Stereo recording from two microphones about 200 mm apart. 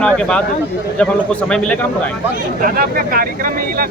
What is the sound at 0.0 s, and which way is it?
Speech, 5° left (ahead or behind).